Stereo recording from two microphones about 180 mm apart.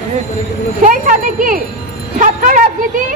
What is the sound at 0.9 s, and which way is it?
A woman's voice, 50° right (ahead or behind).